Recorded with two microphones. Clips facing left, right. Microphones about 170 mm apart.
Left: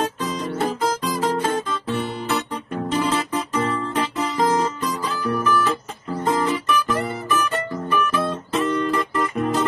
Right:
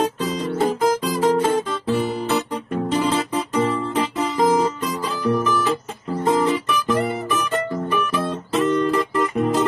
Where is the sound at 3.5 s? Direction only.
5° right (ahead or behind).